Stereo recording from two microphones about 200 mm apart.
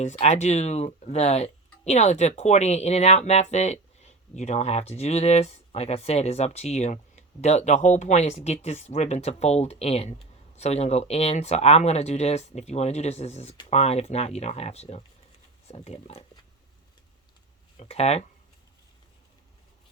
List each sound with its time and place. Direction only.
0.0 s speech: 35° left (ahead or behind)
17.7 s speech: 30° left (ahead or behind)